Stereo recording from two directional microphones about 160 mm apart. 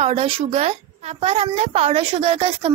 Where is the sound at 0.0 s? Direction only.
35° right (ahead or behind).